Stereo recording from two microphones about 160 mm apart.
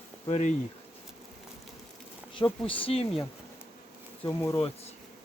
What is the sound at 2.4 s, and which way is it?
Speech, 35° left (ahead or behind).